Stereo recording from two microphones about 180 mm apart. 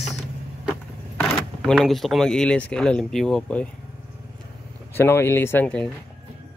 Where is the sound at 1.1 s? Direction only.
5° left (ahead or behind).